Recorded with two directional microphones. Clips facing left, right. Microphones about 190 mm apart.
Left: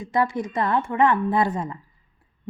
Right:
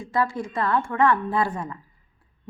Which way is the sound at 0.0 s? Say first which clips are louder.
Left 2 dB; 20° left (ahead or behind).